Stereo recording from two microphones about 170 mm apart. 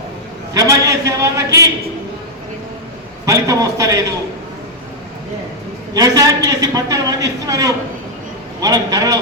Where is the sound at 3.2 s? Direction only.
20° right (ahead or behind).